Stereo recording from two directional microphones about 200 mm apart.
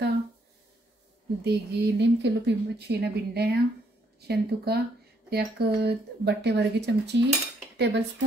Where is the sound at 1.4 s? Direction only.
55° right (ahead or behind).